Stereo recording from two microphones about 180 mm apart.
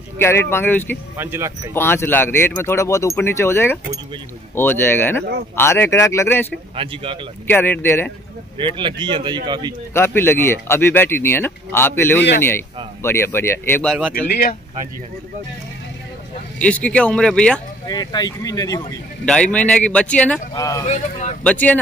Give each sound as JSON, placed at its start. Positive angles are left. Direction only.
{"t": 0.2, "sound": "speech", "side_deg": 15}
{"t": 1.1, "sound": "speech", "side_deg": -10}
{"t": 1.7, "sound": "speech", "side_deg": 15}
{"t": 6.8, "sound": "speech", "side_deg": -30}
{"t": 7.4, "sound": "speech", "side_deg": 10}
{"t": 8.5, "sound": "speech", "side_deg": -25}
{"t": 9.9, "sound": "speech", "side_deg": 15}
{"t": 14.1, "sound": "speech", "side_deg": 55}
{"t": 16.5, "sound": "speech", "side_deg": 5}
{"t": 17.8, "sound": "speech", "side_deg": 20}
{"t": 19.2, "sound": "speech", "side_deg": 5}
{"t": 20.5, "sound": "speech", "side_deg": 20}
{"t": 20.8, "sound": "speech", "side_deg": 40}
{"t": 21.5, "sound": "speech", "side_deg": 10}